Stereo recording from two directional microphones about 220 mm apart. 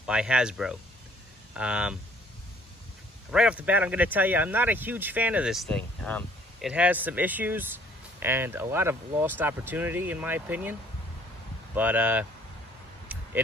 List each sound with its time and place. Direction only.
0.0 s speech: 5° right (ahead or behind)
3.3 s speech: 5° right (ahead or behind)
6.7 s speech: 5° right (ahead or behind)